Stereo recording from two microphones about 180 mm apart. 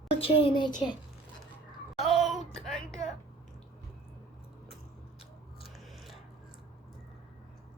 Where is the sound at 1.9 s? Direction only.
Centre (ahead or behind).